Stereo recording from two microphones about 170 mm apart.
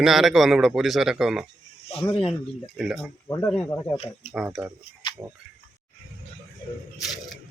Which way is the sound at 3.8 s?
40° left (ahead or behind).